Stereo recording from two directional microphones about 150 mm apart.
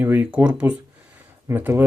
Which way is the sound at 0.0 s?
10° right (ahead or behind).